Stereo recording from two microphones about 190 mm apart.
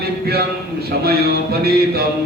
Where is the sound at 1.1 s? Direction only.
55° right (ahead or behind).